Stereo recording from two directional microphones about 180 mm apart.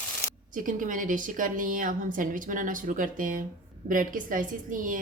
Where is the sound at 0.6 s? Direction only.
45° right (ahead or behind).